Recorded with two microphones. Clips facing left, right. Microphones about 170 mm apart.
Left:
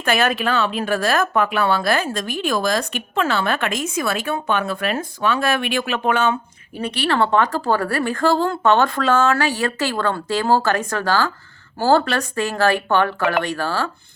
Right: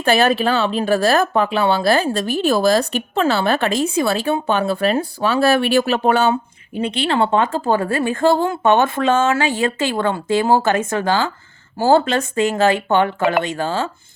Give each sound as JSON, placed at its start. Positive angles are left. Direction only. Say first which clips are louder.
{"t": 0.0, "sound": "a woman's voice", "louder": "right 4 dB", "side_deg": -30}